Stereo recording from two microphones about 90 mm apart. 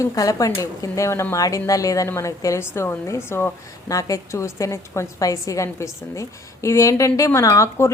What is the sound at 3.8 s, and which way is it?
A woman's voice, 40° left (ahead or behind).